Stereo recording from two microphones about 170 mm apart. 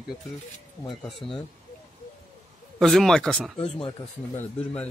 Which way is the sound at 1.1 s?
30° left (ahead or behind).